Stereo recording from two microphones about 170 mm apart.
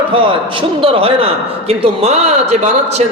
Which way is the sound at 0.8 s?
30° right (ahead or behind).